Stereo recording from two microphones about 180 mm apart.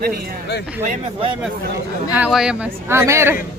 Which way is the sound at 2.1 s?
5° right (ahead or behind).